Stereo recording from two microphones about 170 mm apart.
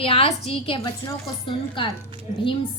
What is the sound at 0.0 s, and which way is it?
A woman's voice, 35° left (ahead or behind).